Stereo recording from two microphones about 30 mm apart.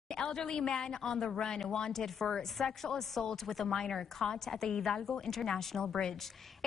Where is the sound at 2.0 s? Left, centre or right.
Centre.